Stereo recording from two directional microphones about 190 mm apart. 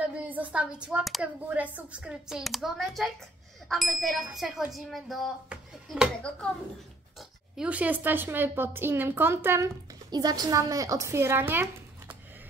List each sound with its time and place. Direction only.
0.0 s a woman's voice: 5° right (ahead or behind)